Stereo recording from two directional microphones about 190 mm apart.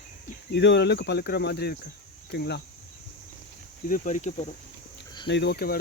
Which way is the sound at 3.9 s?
40° left (ahead or behind).